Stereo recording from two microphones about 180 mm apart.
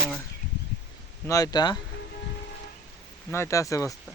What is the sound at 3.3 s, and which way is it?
Speech, 15° left (ahead or behind).